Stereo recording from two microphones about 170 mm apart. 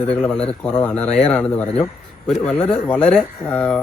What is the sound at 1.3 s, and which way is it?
Speech, 5° left (ahead or behind).